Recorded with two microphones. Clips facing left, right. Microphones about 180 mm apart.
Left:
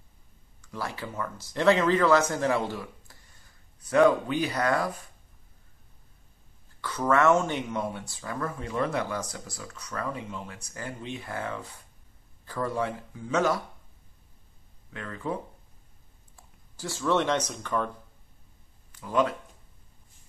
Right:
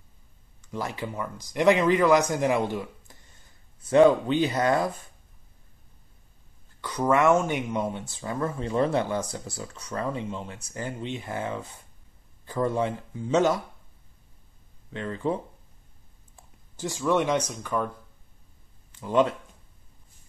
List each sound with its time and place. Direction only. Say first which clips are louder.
0.6 s speech: right 3 dB; 20° right (ahead or behind)
6.8 s speech: right 1 dB; 15° right (ahead or behind)
14.9 s speech: right 5 dB; 25° right (ahead or behind)
16.7 s speech: right 2 dB; 15° right (ahead or behind)
18.9 s speech: right 3 dB; 25° right (ahead or behind)